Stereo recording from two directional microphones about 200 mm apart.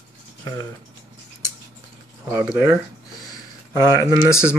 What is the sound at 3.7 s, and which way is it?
Speech, 20° left (ahead or behind).